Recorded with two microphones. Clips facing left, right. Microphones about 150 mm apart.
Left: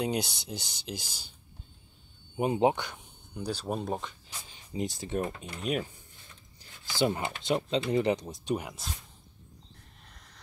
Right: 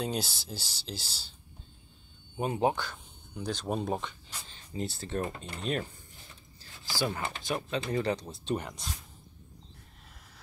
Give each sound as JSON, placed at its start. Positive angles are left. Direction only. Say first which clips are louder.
{"t": 0.0, "sound": "speech", "louder": "left 3 dB", "side_deg": 15}
{"t": 2.3, "sound": "speech", "louder": "left 3 dB", "side_deg": 20}
{"t": 3.4, "sound": "speech", "louder": "right 1 dB", "side_deg": 5}
{"t": 4.3, "sound": "speech", "louder": "left 2 dB", "side_deg": 15}
{"t": 6.6, "sound": "rub", "louder": "left 5 dB", "side_deg": 20}
{"t": 7.9, "sound": "speech", "louder": "left 3 dB", "side_deg": 20}